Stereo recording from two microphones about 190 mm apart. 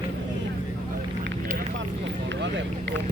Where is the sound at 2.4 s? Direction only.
70° right (ahead or behind).